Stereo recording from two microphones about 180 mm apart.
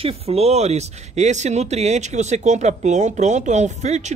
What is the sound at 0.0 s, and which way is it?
Speech, 35° right (ahead or behind).